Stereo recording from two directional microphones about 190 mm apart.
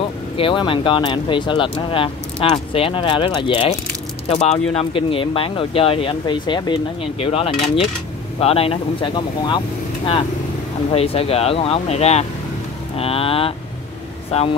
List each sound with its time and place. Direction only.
0.4 s speech: 25° left (ahead or behind)
10.9 s speech: 30° left (ahead or behind)